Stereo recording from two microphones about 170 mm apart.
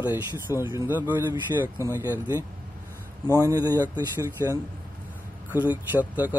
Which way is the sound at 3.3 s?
20° right (ahead or behind).